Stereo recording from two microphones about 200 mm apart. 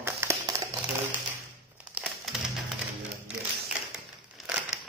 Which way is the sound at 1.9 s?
5° right (ahead or behind).